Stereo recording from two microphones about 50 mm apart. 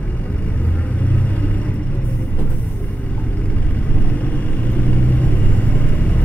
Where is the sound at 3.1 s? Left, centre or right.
Left.